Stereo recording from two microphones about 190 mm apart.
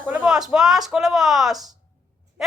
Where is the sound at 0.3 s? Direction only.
Centre (ahead or behind).